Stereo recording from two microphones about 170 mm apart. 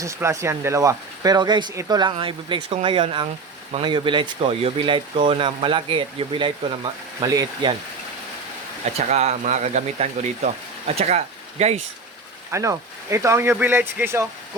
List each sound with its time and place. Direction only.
0.0 s speech: 15° right (ahead or behind)
9.0 s speech: 40° right (ahead or behind)
12.5 s speech: 15° right (ahead or behind)